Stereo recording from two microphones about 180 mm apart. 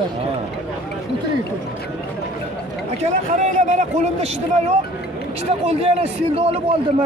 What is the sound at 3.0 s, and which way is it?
A man's voice, 40° right (ahead or behind).